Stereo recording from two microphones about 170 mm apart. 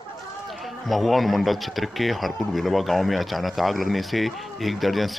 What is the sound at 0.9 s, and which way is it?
Speech, centre (ahead or behind).